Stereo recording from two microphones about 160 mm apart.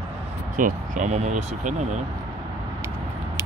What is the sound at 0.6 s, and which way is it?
Speech, 55° right (ahead or behind).